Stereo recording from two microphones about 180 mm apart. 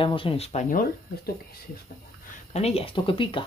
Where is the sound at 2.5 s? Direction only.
35° left (ahead or behind).